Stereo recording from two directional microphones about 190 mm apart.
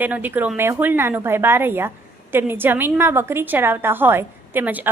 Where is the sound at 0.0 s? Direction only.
10° right (ahead or behind).